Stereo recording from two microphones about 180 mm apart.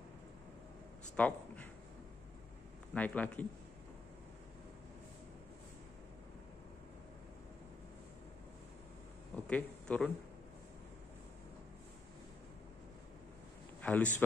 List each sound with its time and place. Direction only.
1.1 s a sound: 10° left (ahead or behind)
2.9 s a man's voice: 10° left (ahead or behind)
9.3 s speech: 5° left (ahead or behind)
13.7 s a man's voice: 10° left (ahead or behind)